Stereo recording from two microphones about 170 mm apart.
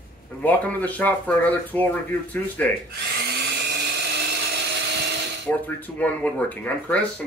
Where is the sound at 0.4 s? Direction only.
10° left (ahead or behind).